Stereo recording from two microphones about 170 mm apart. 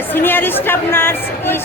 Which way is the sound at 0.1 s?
10° left (ahead or behind).